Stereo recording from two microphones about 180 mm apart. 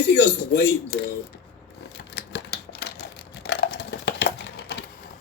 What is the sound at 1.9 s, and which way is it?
Typewriter, 75° left (ahead or behind).